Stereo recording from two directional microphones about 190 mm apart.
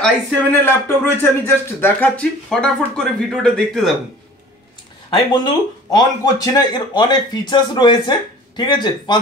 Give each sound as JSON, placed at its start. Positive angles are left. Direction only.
{"t": 0.0, "sound": "a man's voice", "side_deg": 10}
{"t": 5.4, "sound": "speech", "side_deg": 20}